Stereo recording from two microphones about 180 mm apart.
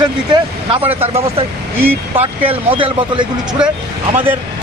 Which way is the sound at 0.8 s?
10° right (ahead or behind).